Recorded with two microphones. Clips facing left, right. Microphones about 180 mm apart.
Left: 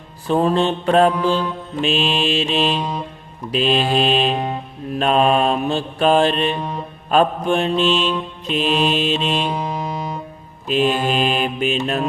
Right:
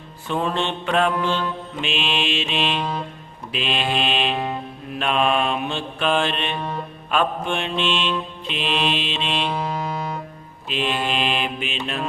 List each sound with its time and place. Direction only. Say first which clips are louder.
0.3 s music: left 7 dB; 35° left (ahead or behind)
9.4 s music: left 2 dB; 15° left (ahead or behind)
10.7 s music: left 6 dB; 40° left (ahead or behind)